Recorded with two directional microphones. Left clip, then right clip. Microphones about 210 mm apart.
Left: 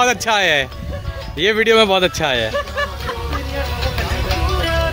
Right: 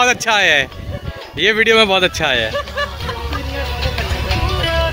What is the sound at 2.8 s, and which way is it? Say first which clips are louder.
Vehicle: right 1 dB; 5° right (ahead or behind).